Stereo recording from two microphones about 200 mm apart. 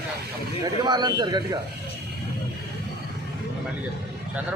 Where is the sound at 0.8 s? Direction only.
20° right (ahead or behind).